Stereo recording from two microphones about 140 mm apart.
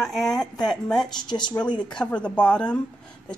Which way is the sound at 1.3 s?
30° left (ahead or behind).